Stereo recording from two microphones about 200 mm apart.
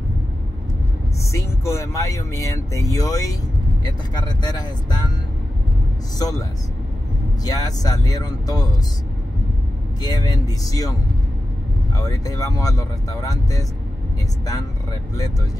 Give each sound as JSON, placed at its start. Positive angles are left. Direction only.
{"t": 1.3, "sound": "speech", "side_deg": 15}
{"t": 6.1, "sound": "speech", "side_deg": 20}
{"t": 7.4, "sound": "speech", "side_deg": 20}
{"t": 10.0, "sound": "speech", "side_deg": 20}
{"t": 12.0, "sound": "speech", "side_deg": 15}